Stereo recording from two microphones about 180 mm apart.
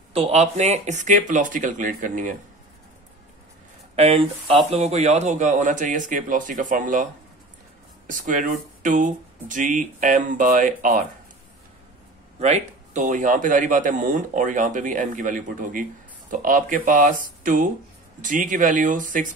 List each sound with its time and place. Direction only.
0.1 s speech: 35° right (ahead or behind)
3.9 s speech: 35° right (ahead or behind)
8.1 s speech: 50° right (ahead or behind)
12.4 s speech: 40° right (ahead or behind)
17.4 s a sound: 50° right (ahead or behind)
18.2 s speech: 45° right (ahead or behind)